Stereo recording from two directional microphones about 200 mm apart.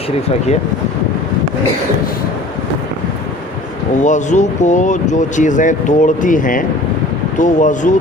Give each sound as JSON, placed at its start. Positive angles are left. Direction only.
{"t": 4.0, "sound": "speech", "side_deg": 35}